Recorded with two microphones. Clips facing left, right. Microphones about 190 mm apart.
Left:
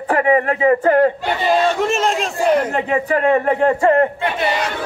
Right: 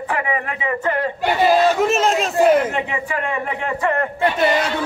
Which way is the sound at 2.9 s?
55° left (ahead or behind).